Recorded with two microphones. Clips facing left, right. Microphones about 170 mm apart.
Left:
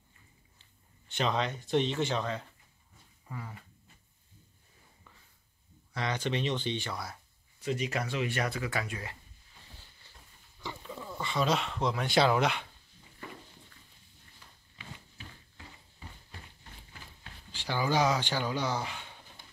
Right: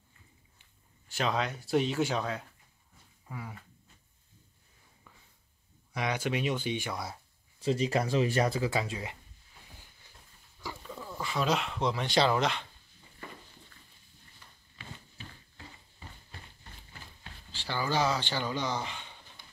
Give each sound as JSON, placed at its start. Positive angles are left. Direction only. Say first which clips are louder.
{"t": 0.6, "sound": "speech", "louder": "left 1 dB", "side_deg": -5}
{"t": 5.9, "sound": "speech", "louder": "right 1 dB", "side_deg": -10}
{"t": 7.6, "sound": "speech", "louder": "right 4 dB", "side_deg": -30}
{"t": 10.6, "sound": "speech", "louder": "even", "side_deg": 0}
{"t": 14.8, "sound": "a sound", "louder": "right 1 dB", "side_deg": 10}
{"t": 17.5, "sound": "speech", "louder": "left 2 dB", "side_deg": 15}